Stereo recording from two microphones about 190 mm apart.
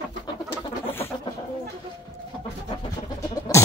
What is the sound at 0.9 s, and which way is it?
Bird, 10° left (ahead or behind).